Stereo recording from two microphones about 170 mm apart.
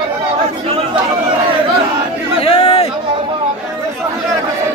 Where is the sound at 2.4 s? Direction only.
35° left (ahead or behind).